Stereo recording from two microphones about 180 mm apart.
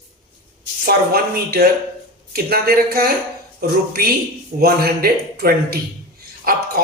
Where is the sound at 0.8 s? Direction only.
60° right (ahead or behind).